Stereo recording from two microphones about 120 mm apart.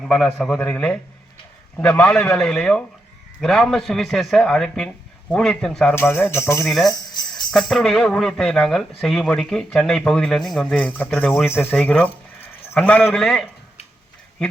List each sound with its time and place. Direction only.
0.0 s a man's voice: 5° left (ahead or behind)
5.9 s a man's voice: 20° left (ahead or behind)
6.7 s a man's voice: centre (ahead or behind)